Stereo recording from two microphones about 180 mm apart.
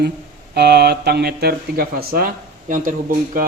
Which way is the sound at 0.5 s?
65° right (ahead or behind).